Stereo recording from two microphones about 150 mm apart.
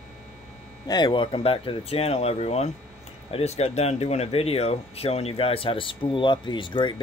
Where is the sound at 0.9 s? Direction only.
30° left (ahead or behind).